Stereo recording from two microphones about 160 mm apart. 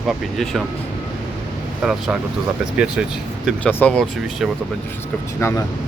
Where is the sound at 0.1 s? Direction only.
Centre (ahead or behind).